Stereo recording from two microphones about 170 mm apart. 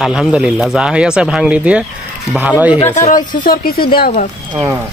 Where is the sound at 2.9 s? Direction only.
45° left (ahead or behind).